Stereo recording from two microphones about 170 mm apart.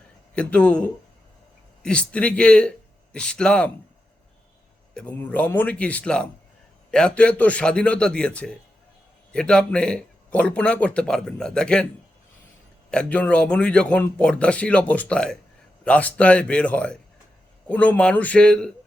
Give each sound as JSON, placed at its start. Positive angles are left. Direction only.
{"t": 0.3, "sound": "a man's voice", "side_deg": 5}
{"t": 4.9, "sound": "a man's voice", "side_deg": 10}
{"t": 12.9, "sound": "a man's voice", "side_deg": 5}